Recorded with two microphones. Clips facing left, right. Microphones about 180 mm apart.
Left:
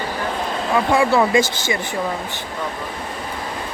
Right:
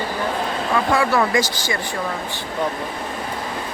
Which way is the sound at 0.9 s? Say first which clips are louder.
Left 3 dB; 25° left (ahead or behind).